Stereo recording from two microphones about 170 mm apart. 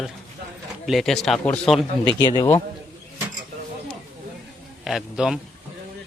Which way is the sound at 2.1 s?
25° left (ahead or behind).